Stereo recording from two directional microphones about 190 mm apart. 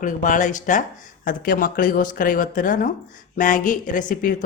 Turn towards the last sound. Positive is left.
turn(degrees=45)  # may be behind; listen again after turning